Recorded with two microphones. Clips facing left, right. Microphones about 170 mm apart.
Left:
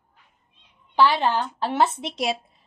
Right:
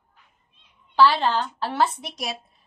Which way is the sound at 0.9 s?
20° left (ahead or behind).